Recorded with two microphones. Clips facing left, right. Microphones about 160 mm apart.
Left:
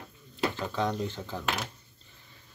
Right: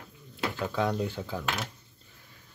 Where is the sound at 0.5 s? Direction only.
10° right (ahead or behind).